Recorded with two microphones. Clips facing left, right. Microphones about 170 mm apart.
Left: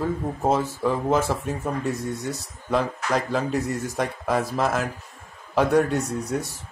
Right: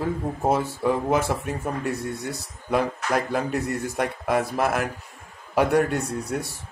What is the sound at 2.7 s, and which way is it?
Speech, 10° right (ahead or behind).